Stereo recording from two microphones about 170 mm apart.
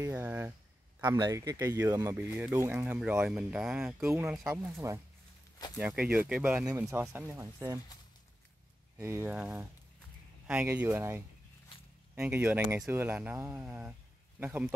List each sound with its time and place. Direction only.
0.0 s speech: 10° right (ahead or behind)
5.8 s speech: 5° right (ahead or behind)
8.9 s speech: 15° right (ahead or behind)